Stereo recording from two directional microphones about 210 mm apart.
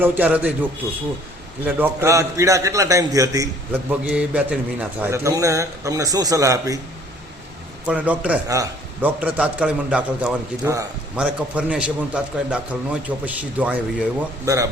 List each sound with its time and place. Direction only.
0.0 s a man's voice: 10° right (ahead or behind)
1.6 s a man's voice: 10° right (ahead or behind)
7.9 s a man's voice: 5° right (ahead or behind)
11.2 s a man's voice: 5° right (ahead or behind)